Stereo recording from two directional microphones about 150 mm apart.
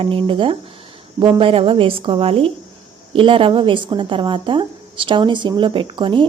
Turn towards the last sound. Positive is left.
turn(degrees=-35)  # may be behind; listen again after turning